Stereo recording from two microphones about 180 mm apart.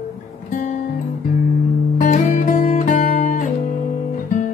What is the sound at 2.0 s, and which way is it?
Music, 40° left (ahead or behind).